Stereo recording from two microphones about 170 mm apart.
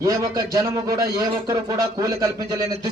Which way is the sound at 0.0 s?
20° right (ahead or behind).